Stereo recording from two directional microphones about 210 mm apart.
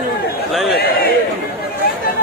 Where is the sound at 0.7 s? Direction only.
50° left (ahead or behind).